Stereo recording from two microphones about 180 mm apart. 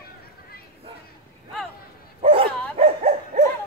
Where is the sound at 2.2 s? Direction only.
30° right (ahead or behind).